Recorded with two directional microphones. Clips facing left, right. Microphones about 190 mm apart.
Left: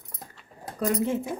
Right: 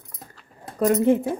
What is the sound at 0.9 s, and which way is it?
Speech, 60° right (ahead or behind).